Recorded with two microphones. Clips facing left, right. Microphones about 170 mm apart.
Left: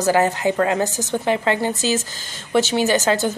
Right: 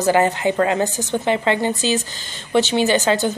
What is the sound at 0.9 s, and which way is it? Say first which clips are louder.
Speech: even; 40° left (ahead or behind).